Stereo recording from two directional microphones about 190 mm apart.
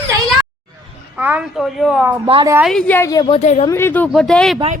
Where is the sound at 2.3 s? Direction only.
25° right (ahead or behind).